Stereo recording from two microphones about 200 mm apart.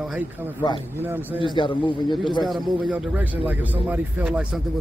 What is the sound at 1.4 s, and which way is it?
Speech, 25° left (ahead or behind).